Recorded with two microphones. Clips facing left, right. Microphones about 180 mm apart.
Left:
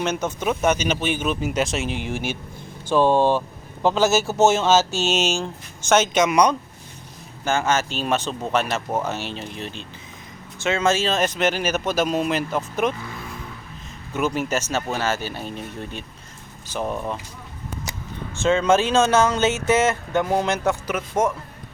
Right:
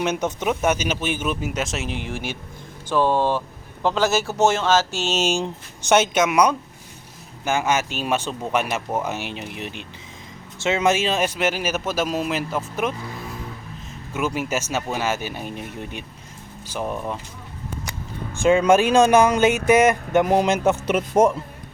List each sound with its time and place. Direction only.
0.0 s speech: 15° right (ahead or behind)
2.9 s speech: 20° left (ahead or behind)
5.2 s speech: 15° right (ahead or behind)
14.1 s speech: 5° right (ahead or behind)
16.8 s speech: centre (ahead or behind)
18.3 s speech: 10° right (ahead or behind)